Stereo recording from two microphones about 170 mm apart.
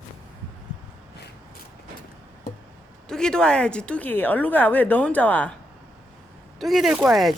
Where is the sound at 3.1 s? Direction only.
5° left (ahead or behind).